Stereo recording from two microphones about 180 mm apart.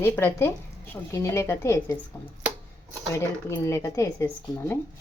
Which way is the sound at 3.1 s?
15° left (ahead or behind).